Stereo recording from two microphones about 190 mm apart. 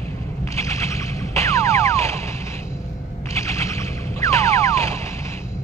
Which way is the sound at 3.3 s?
15° left (ahead or behind).